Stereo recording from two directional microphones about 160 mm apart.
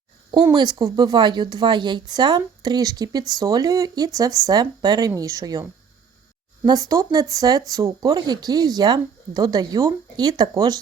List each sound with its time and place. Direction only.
0.5 s speech: 25° right (ahead or behind)
6.7 s speech: 25° right (ahead or behind)